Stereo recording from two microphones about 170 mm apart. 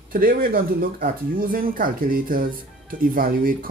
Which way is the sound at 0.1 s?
55° right (ahead or behind).